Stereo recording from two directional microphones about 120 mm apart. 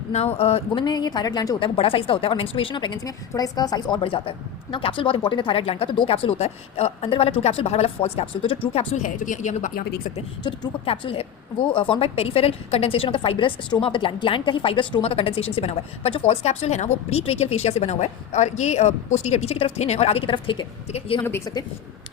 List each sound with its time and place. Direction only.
0.3 s a woman's voice: 60° left (ahead or behind)
0.9 s a woman's voice: 35° left (ahead or behind)
9.0 s speech: 90° left
10.8 s a woman's voice: 45° left (ahead or behind)
20.3 s a woman's voice: 40° left (ahead or behind)
21.2 s a woman's voice: 20° left (ahead or behind)